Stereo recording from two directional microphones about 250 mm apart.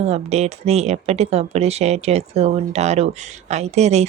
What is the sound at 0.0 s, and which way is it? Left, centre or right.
Speech, right.